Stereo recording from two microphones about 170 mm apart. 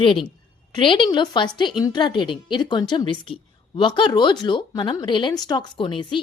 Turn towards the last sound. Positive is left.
turn(degrees=30)  # may be behind; listen again after turning